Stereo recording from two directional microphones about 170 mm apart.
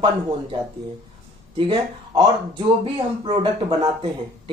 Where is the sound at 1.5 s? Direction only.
30° right (ahead or behind).